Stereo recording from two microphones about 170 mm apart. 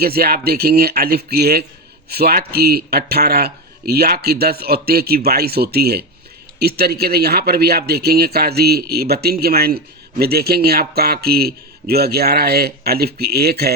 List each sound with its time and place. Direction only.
0.0 s speech: 65° right (ahead or behind)